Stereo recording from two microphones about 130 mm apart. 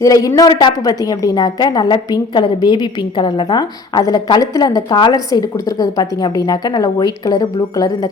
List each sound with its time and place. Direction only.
0.0 s a woman's voice: 25° left (ahead or behind)